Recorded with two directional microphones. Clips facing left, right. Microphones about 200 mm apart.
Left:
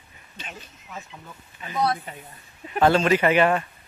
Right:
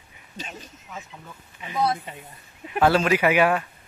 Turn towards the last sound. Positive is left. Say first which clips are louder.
# left 1 dB
turn(degrees=-10)  # may be behind; listen again after turning